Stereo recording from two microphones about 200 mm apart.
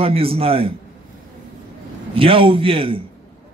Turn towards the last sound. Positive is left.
turn(degrees=-25)  # may be behind; listen again after turning